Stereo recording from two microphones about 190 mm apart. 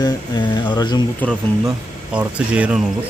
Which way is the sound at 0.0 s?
25° left (ahead or behind).